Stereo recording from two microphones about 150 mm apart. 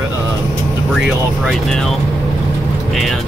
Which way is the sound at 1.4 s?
Centre (ahead or behind).